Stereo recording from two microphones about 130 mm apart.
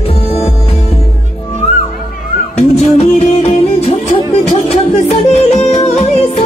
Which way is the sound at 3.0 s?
50° left (ahead or behind).